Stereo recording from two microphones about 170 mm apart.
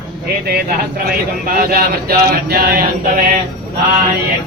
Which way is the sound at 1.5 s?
60° right (ahead or behind).